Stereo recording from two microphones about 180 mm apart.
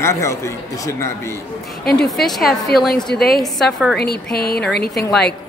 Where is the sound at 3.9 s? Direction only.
60° left (ahead or behind).